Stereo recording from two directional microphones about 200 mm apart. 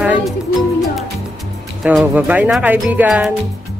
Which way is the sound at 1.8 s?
5° right (ahead or behind).